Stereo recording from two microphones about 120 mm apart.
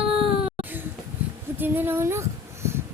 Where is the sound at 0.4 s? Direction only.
10° right (ahead or behind).